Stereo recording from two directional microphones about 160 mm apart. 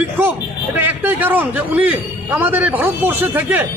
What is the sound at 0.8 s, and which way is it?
A man's voice, 10° right (ahead or behind).